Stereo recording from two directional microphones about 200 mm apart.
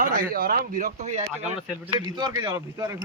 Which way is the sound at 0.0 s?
45° right (ahead or behind).